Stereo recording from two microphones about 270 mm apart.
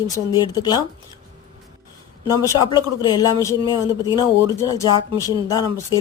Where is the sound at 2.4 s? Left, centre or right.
Centre.